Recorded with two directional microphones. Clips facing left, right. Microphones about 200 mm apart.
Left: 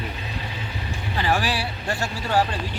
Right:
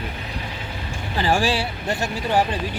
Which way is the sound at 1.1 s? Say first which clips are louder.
Right 3 dB; 30° right (ahead or behind).